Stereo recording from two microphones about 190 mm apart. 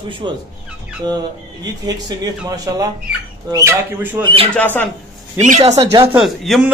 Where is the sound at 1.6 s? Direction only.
20° right (ahead or behind).